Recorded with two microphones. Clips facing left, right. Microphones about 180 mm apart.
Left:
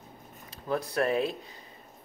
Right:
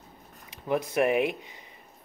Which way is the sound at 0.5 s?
20° right (ahead or behind).